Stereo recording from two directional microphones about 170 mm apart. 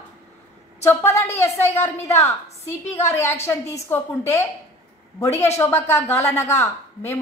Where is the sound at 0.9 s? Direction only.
15° left (ahead or behind).